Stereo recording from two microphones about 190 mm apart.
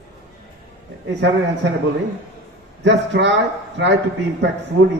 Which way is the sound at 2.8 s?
65° right (ahead or behind).